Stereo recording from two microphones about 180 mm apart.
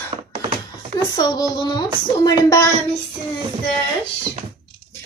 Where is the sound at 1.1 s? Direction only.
20° left (ahead or behind).